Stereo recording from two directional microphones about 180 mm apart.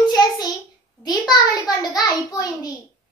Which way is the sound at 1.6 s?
25° left (ahead or behind).